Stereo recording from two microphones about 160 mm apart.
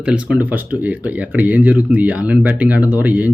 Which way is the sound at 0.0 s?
5° right (ahead or behind).